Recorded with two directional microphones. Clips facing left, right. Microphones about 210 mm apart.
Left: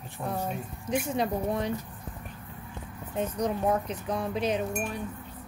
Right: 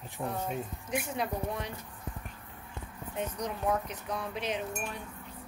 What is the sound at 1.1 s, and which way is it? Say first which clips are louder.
Speech: left 6 dB; 35° left (ahead or behind).